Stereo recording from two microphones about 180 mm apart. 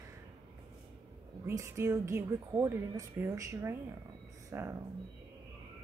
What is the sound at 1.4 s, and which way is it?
A woman's voice, 15° right (ahead or behind).